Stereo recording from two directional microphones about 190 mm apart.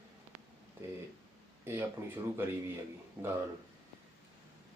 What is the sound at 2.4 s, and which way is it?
Speech, 10° right (ahead or behind).